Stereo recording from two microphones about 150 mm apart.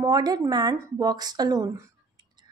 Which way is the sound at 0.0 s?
25° right (ahead or behind).